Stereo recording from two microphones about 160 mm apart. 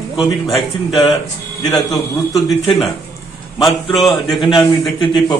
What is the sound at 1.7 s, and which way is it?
Speech, centre (ahead or behind).